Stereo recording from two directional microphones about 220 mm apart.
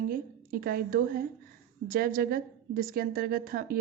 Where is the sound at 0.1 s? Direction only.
40° right (ahead or behind).